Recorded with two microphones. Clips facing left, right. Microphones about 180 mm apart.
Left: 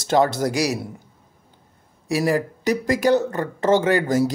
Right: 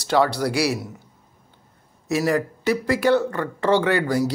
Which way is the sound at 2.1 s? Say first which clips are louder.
Even; 15° left (ahead or behind).